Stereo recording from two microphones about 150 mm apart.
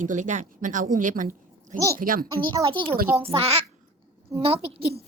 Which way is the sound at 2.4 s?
35° right (ahead or behind).